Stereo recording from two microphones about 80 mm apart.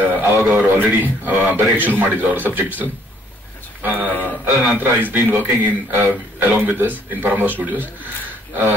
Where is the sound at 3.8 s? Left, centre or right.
Right.